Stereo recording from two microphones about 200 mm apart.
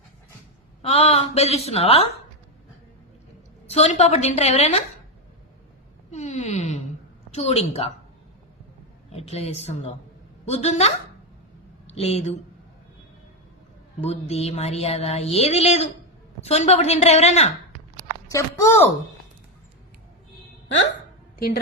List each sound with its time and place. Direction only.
0.8 s speech: 30° left (ahead or behind)
3.7 s speech: 30° left (ahead or behind)
6.1 s wail: 35° left (ahead or behind)
7.3 s speech: 30° left (ahead or behind)
9.1 s speech: 30° left (ahead or behind)
14.1 s speech: 30° left (ahead or behind)
18.3 s speech: 15° left (ahead or behind)
21.3 s a woman's voice: 50° left (ahead or behind)